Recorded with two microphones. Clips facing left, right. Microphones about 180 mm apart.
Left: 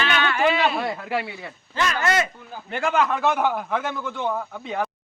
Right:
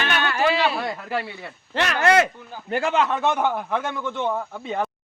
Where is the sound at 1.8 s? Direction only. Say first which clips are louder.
Right 4 dB; 65° right (ahead or behind).